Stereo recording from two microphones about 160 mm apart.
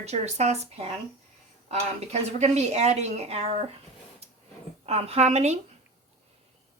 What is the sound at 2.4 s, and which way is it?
Speech, 45° right (ahead or behind).